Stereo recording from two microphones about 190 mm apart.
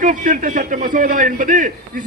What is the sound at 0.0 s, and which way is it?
A man's voice, 45° right (ahead or behind).